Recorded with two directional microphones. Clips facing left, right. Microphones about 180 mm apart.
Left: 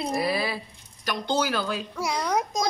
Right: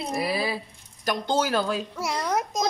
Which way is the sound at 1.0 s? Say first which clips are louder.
Right 1 dB; 45° right (ahead or behind).